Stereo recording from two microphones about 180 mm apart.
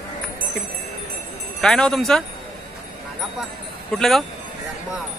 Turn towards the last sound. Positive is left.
turn(degrees=0)  # may be behind; listen again after turning